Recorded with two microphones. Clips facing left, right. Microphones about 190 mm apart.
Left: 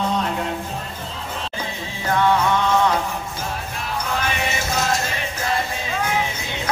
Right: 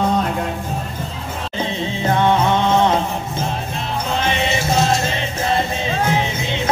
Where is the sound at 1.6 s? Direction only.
25° right (ahead or behind).